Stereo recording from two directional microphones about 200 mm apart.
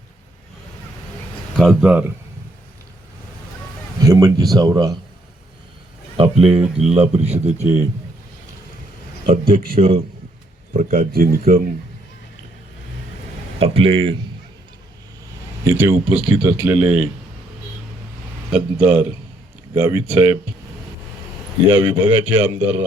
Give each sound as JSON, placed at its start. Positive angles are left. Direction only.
{"t": 1.5, "sound": "speech", "side_deg": 0}
{"t": 4.0, "sound": "speech", "side_deg": -15}
{"t": 6.1, "sound": "speech", "side_deg": -30}
{"t": 9.7, "sound": "speech", "side_deg": -30}
{"t": 10.8, "sound": "speech", "side_deg": -45}
{"t": 13.6, "sound": "speech", "side_deg": -30}
{"t": 15.6, "sound": "speech", "side_deg": -10}
{"t": 16.0, "sound": "speech", "side_deg": -25}
{"t": 16.6, "sound": "speech", "side_deg": -5}
{"t": 18.5, "sound": "speech", "side_deg": -10}
{"t": 21.7, "sound": "speech", "side_deg": -25}
{"t": 22.2, "sound": "speech", "side_deg": -10}